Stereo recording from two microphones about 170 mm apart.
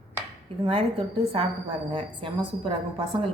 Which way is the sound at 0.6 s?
30° right (ahead or behind).